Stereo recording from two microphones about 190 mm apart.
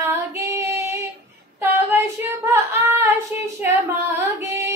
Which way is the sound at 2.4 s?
10° right (ahead or behind).